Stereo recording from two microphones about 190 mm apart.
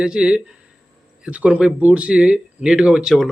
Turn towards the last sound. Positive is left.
turn(degrees=0)  # may be behind; listen again after turning